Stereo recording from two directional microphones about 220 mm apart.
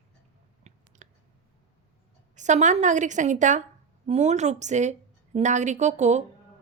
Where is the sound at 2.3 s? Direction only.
35° right (ahead or behind).